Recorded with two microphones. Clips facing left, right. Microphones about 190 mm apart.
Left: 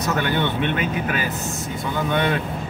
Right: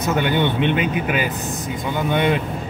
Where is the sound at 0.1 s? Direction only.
15° right (ahead or behind).